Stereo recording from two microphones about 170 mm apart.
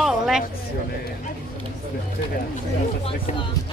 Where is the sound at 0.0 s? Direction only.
5° right (ahead or behind).